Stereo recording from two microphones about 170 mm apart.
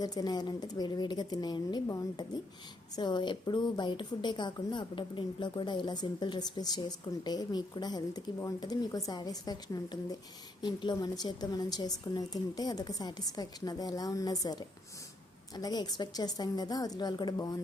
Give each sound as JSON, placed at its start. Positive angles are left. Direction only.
{"t": 0.0, "sound": "a woman's voice", "side_deg": 20}